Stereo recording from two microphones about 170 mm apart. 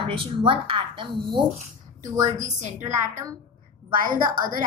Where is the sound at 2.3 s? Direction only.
45° right (ahead or behind).